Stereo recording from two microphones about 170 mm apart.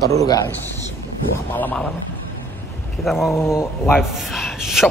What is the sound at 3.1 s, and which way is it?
A man's voice, centre (ahead or behind).